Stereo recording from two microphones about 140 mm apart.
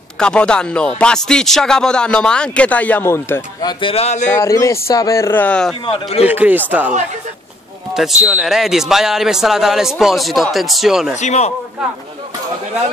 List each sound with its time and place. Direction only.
0.2 s speech: 5° left (ahead or behind)
3.6 s speech: 40° left (ahead or behind)
4.3 s speech: 25° left (ahead or behind); by 5.8 s 5° left (ahead or behind)
6.2 s speech: 10° right (ahead or behind)
7.9 s speech: 5° right (ahead or behind)
11.1 s speech: 55° left (ahead or behind)